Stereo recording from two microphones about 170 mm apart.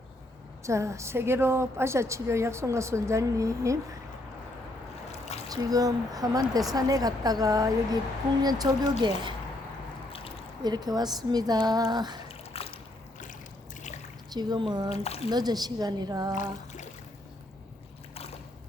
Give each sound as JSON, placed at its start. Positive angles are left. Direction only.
{"t": 0.6, "sound": "a woman's voice", "side_deg": -15}
{"t": 5.5, "sound": "speech", "side_deg": -20}
{"t": 10.6, "sound": "speech", "side_deg": -25}
{"t": 12.3, "sound": "a sound", "side_deg": 35}
{"t": 14.3, "sound": "speech", "side_deg": -25}
{"t": 14.8, "sound": "speech", "side_deg": 35}
{"t": 15.3, "sound": "speech", "side_deg": -25}
{"t": 16.3, "sound": "a sound", "side_deg": 45}